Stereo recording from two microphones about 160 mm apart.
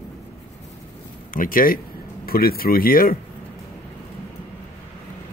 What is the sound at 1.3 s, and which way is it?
Speech, 60° left (ahead or behind).